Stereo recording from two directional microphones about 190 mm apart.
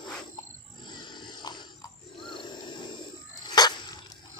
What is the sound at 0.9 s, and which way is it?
Pig, 25° left (ahead or behind).